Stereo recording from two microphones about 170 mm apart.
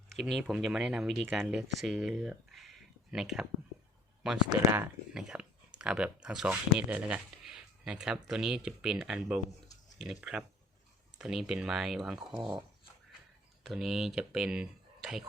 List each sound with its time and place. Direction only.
0.1 s speech: centre (ahead or behind)
5.1 s a sound: 5° right (ahead or behind)
6.2 s speech: 5° right (ahead or behind)
13.7 s speech: centre (ahead or behind)